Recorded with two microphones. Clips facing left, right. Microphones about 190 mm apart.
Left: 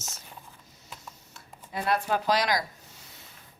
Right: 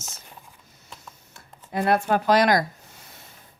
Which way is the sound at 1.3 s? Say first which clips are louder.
Right 7 dB; 55° right (ahead or behind).